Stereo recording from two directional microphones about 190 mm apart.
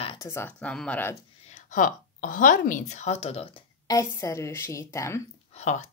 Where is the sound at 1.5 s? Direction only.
40° left (ahead or behind).